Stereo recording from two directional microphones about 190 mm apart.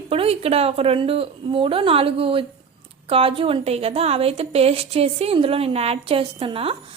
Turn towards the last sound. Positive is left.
turn(degrees=-30)  # may be behind; listen again after turning